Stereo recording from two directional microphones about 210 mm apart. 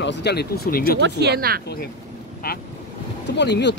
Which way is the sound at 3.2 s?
55° left (ahead or behind).